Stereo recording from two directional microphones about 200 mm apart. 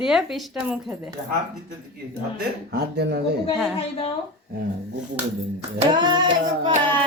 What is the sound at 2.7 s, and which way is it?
Speech, 55° right (ahead or behind).